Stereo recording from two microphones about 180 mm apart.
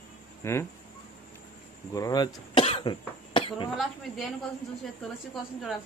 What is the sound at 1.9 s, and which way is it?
Speech, 20° left (ahead or behind).